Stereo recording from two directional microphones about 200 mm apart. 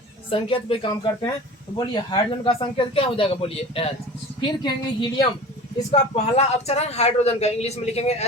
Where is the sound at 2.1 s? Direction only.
25° left (ahead or behind).